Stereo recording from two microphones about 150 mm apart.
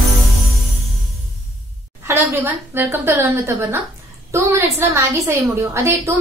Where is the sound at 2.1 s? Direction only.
15° right (ahead or behind).